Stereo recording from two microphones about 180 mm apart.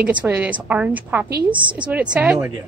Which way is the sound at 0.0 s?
10° right (ahead or behind).